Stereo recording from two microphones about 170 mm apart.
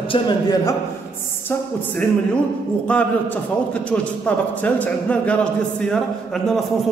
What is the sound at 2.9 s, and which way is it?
A man's voice, 10° left (ahead or behind).